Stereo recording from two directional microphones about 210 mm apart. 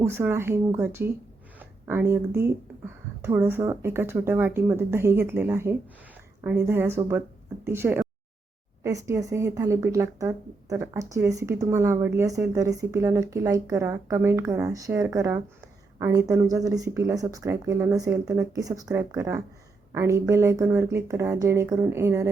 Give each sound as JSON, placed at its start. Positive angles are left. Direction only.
{"t": 0.0, "sound": "speech", "side_deg": -10}